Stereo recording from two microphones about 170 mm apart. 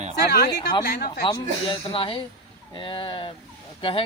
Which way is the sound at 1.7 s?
30° left (ahead or behind).